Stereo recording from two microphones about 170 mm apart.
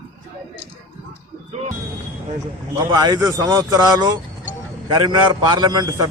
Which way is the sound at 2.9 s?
25° right (ahead or behind).